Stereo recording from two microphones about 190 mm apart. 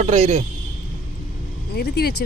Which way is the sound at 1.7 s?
55° left (ahead or behind).